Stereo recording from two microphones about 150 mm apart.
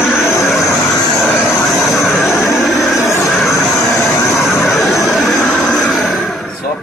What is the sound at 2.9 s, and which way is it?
Vehicle, 20° left (ahead or behind).